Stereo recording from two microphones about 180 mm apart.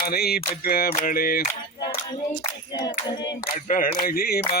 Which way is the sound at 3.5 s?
50° left (ahead or behind).